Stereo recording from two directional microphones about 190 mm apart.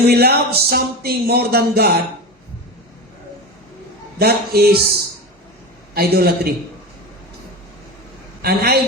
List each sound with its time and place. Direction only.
0.1 s speech: 55° right (ahead or behind)
4.2 s speech: 55° right (ahead or behind)
5.9 s speech: 55° right (ahead or behind)
8.4 s a man's voice: 55° right (ahead or behind)